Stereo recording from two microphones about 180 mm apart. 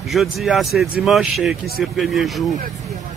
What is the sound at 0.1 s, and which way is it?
A man's voice, centre (ahead or behind).